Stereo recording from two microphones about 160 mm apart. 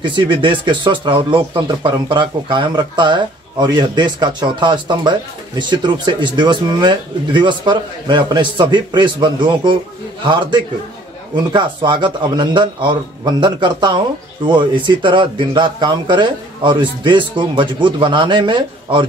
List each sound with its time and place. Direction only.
0.0 s speech: 30° right (ahead or behind)